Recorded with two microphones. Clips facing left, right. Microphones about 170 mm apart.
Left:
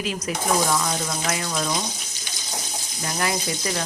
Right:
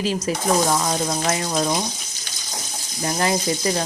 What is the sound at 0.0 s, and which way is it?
Speech, 30° right (ahead or behind).